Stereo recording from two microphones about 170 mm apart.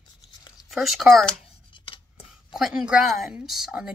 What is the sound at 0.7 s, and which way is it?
Speech, centre (ahead or behind).